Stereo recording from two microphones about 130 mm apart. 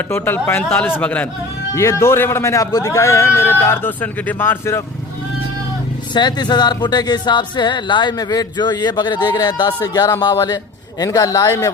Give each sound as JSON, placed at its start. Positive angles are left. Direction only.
{"t": 0.1, "sound": "speech", "side_deg": 15}
{"t": 1.7, "sound": "a man's voice", "side_deg": 25}
{"t": 6.1, "sound": "a man's voice", "side_deg": 35}